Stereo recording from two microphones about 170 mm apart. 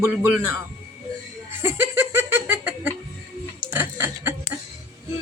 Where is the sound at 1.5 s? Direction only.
15° right (ahead or behind).